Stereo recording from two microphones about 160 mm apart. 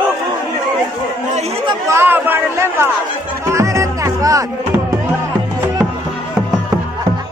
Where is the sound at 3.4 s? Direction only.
20° right (ahead or behind).